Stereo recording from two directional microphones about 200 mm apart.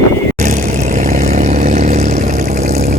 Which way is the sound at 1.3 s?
35° right (ahead or behind).